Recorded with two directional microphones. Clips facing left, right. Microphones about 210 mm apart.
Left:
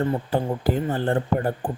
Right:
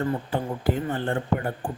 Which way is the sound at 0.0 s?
35° left (ahead or behind).